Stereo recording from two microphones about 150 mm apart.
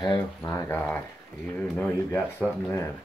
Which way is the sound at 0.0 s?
25° left (ahead or behind).